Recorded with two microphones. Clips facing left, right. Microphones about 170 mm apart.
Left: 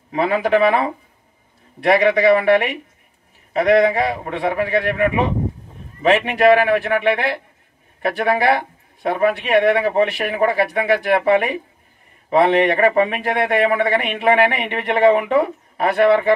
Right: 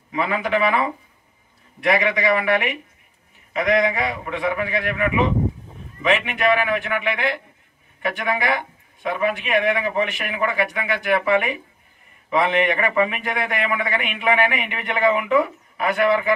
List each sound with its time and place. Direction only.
0.1 s speech: 35° left (ahead or behind)